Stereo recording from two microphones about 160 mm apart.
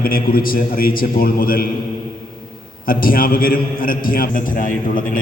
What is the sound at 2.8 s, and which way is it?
A man's voice, 65° left (ahead or behind).